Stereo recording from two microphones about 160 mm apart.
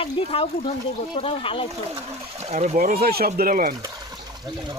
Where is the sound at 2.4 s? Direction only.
45° right (ahead or behind).